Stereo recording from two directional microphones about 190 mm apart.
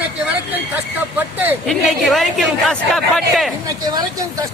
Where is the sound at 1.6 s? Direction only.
Centre (ahead or behind).